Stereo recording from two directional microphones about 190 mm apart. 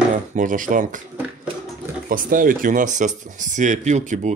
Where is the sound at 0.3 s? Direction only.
45° right (ahead or behind).